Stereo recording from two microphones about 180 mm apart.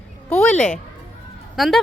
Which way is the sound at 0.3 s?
5° left (ahead or behind).